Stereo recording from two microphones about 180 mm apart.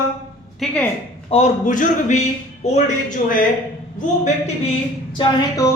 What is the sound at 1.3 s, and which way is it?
Speech, 40° left (ahead or behind).